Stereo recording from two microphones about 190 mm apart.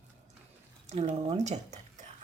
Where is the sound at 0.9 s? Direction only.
35° right (ahead or behind).